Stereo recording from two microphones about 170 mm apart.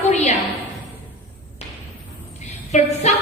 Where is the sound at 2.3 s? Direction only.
40° left (ahead or behind).